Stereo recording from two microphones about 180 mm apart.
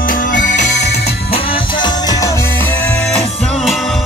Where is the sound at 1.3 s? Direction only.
30° left (ahead or behind).